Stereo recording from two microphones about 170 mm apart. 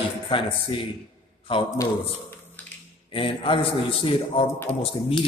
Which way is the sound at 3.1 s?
30° left (ahead or behind).